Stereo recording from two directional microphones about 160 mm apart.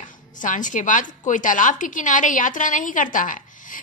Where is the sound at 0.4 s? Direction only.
55° left (ahead or behind).